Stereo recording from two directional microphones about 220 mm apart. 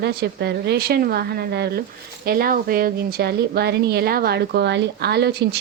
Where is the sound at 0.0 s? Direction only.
50° right (ahead or behind).